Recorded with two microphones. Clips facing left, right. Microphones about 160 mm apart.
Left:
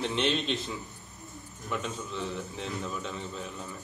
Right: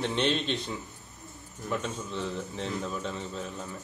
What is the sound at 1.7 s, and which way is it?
Speech, 40° right (ahead or behind).